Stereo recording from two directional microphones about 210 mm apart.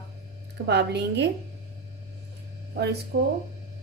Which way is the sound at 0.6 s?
55° right (ahead or behind).